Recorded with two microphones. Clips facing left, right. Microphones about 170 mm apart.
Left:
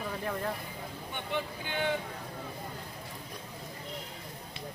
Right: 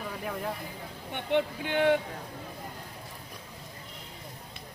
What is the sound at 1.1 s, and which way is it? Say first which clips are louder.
Speech: right 8 dB; 70° right (ahead or behind).